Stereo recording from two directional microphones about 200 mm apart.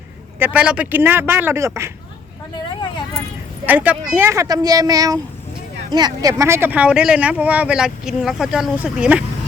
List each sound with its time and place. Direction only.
0.3 s speech: 10° right (ahead or behind)
3.7 s speech: 10° right (ahead or behind)